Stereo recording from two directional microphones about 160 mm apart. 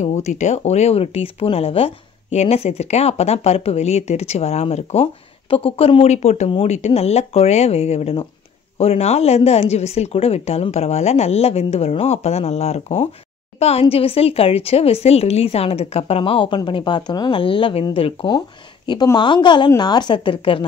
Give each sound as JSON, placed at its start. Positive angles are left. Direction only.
{"t": 0.0, "sound": "a woman's voice", "side_deg": 45}